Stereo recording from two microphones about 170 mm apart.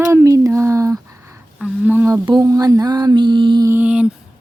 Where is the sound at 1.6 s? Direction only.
5° right (ahead or behind).